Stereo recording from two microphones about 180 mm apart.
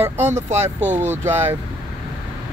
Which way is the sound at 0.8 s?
40° right (ahead or behind).